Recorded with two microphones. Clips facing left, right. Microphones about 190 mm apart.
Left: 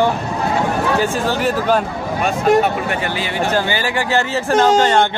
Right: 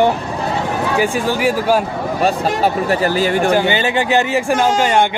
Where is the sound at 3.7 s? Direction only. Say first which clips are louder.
Right 3 dB; 20° right (ahead or behind).